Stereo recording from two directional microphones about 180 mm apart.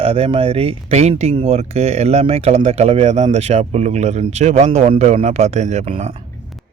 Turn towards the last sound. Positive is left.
turn(degrees=-35)  # may be behind; listen again after turning